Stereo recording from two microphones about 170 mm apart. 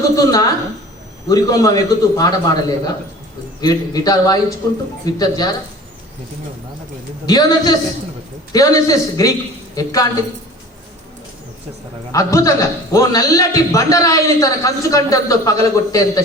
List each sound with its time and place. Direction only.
0.2 s a man's voice: 20° left (ahead or behind)
7.3 s a man's voice: 20° left (ahead or behind)
12.1 s a man's voice: 20° left (ahead or behind)